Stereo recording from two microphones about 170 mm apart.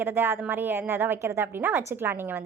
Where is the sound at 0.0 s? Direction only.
10° right (ahead or behind).